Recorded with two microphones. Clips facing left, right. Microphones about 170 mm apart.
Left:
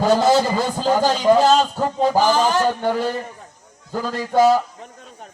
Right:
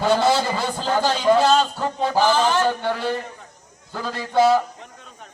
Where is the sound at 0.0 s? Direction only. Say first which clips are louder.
Left 3 dB; 40° left (ahead or behind).